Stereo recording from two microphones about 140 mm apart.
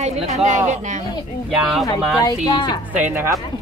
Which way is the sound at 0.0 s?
55° right (ahead or behind).